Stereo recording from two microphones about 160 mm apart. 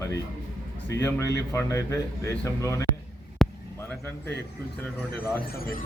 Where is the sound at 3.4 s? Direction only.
5° left (ahead or behind).